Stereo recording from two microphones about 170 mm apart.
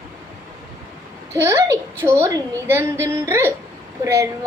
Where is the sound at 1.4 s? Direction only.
15° right (ahead or behind).